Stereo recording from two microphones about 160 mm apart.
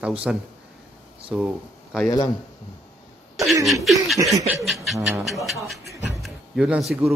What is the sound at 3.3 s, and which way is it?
A man's voice, centre (ahead or behind).